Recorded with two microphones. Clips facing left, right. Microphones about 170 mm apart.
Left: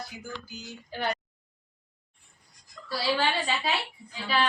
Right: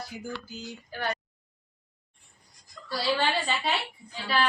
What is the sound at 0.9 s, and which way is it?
Speech, 20° left (ahead or behind).